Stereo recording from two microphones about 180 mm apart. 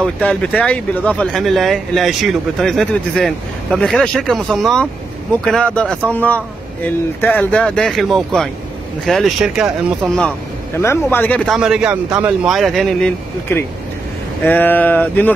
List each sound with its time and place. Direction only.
0.0 s speech: 5° left (ahead or behind)
10.8 s speech: 15° left (ahead or behind)
13.5 s speech: 10° left (ahead or behind)